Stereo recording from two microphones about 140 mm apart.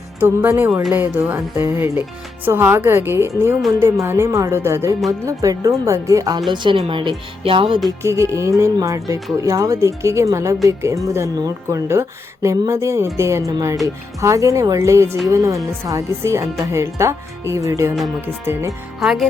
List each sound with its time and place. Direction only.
0.2 s speech: 15° right (ahead or behind); by 7.8 s 40° right (ahead or behind)
7.9 s speech: 20° right (ahead or behind)
18.9 s speech: centre (ahead or behind)